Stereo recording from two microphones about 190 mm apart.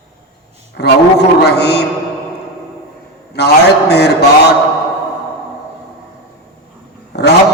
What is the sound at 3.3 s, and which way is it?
A man's voice, 60° left (ahead or behind).